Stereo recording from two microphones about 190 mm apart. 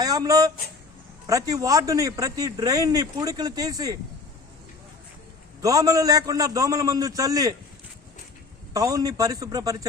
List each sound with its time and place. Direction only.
0.0 s speech: 20° right (ahead or behind)
5.6 s speech: 20° right (ahead or behind)
8.7 s speech: 20° right (ahead or behind)